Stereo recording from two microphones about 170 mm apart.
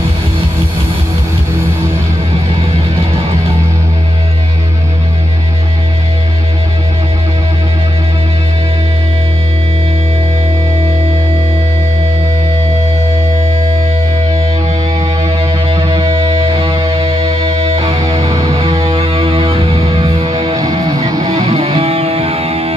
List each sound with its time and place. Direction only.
15.2 s music: 30° right (ahead or behind)
21.3 s music: 35° right (ahead or behind)